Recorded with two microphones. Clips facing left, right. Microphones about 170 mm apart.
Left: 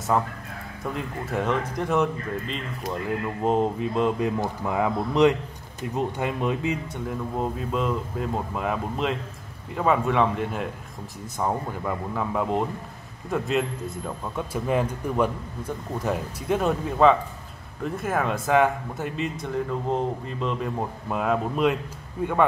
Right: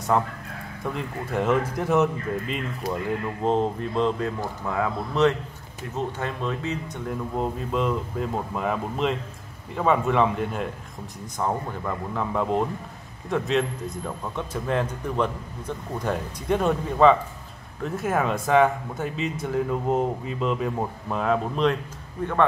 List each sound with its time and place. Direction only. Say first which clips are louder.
0.1 s speech: right 1 dB; centre (ahead or behind)
3.4 s speech: left 1 dB; 5° left (ahead or behind)
4.4 s speech: left 2 dB; 15° left (ahead or behind)
7.1 s speech: right 1 dB; centre (ahead or behind)